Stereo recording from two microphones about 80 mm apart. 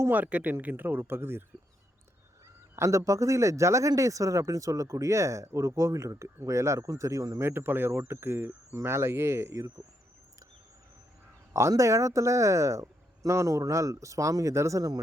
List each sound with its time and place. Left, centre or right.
0.1 s speech: centre
2.7 s speech: right
11.7 s speech: right